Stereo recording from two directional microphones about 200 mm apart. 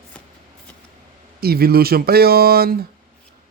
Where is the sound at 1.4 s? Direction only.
50° right (ahead or behind).